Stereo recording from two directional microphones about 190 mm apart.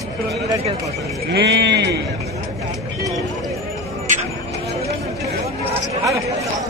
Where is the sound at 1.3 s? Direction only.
60° right (ahead or behind).